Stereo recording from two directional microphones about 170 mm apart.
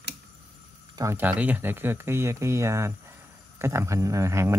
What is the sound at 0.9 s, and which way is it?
Speech, 15° right (ahead or behind).